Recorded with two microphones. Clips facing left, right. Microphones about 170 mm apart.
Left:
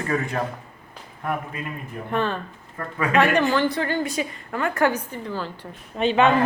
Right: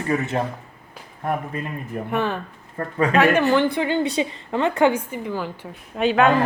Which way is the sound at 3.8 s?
20° right (ahead or behind).